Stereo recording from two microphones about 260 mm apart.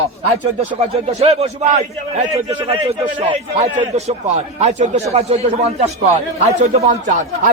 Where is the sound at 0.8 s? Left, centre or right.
Right.